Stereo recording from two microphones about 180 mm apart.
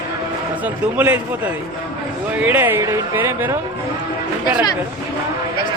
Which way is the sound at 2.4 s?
10° right (ahead or behind).